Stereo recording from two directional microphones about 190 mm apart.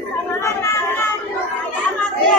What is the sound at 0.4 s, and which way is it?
Chatter, 15° left (ahead or behind).